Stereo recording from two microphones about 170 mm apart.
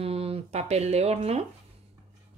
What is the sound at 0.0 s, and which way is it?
Speech, 35° right (ahead or behind).